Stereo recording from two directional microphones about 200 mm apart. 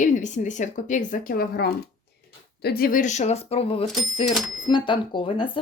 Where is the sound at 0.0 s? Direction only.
40° left (ahead or behind).